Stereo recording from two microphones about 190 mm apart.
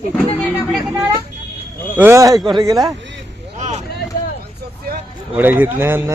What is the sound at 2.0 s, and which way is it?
Speech, 15° right (ahead or behind).